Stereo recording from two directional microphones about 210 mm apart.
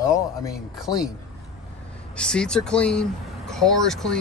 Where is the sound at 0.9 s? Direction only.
20° left (ahead or behind).